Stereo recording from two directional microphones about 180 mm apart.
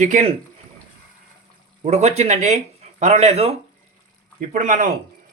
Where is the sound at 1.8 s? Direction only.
40° right (ahead or behind).